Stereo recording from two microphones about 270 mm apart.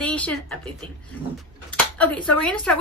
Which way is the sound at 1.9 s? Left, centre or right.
Centre.